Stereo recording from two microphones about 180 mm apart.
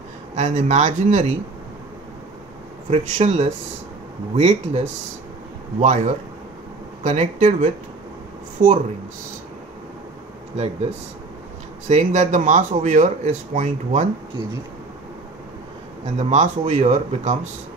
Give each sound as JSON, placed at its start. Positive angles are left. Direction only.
{"t": 0.4, "sound": "speech", "side_deg": -40}
{"t": 2.9, "sound": "speech", "side_deg": -40}
{"t": 8.6, "sound": "speech", "side_deg": -50}
{"t": 11.9, "sound": "speech", "side_deg": -45}
{"t": 16.2, "sound": "speech", "side_deg": -40}